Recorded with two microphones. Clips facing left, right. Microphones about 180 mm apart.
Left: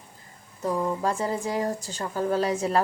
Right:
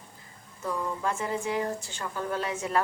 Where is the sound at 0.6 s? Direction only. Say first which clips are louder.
Left 5 dB; 35° left (ahead or behind).